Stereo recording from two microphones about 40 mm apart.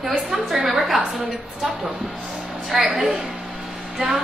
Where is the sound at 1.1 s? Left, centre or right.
Centre.